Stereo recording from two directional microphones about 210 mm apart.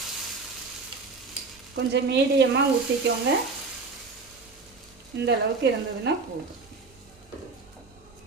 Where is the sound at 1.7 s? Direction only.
55° right (ahead or behind).